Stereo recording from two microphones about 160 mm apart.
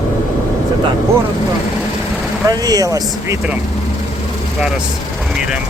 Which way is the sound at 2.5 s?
25° right (ahead or behind).